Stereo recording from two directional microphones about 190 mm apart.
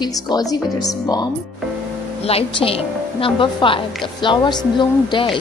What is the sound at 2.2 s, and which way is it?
A woman's voice, 30° left (ahead or behind).